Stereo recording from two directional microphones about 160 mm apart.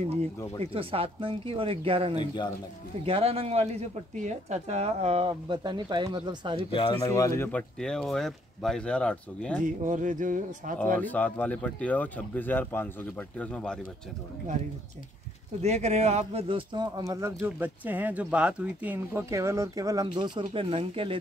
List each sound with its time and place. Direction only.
0.7 s speech: 35° right (ahead or behind)
2.1 s a man's voice: 30° left (ahead or behind)
3.1 s speech: 35° right (ahead or behind)
6.7 s speech: 30° left (ahead or behind)
7.1 s speech: 20° left (ahead or behind)
9.6 s speech: 50° right (ahead or behind)
11.0 s speech: 10° left (ahead or behind)
15.6 s a man's voice: 45° right (ahead or behind)